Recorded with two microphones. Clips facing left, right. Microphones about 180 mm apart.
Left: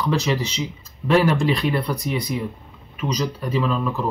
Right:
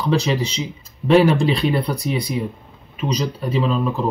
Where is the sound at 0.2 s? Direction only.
25° right (ahead or behind).